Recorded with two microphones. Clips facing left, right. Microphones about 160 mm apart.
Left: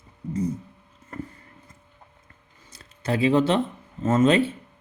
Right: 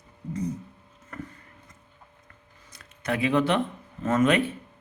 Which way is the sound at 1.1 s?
30° left (ahead or behind).